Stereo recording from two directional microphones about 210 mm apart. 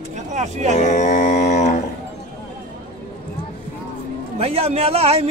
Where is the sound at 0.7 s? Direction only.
35° left (ahead or behind).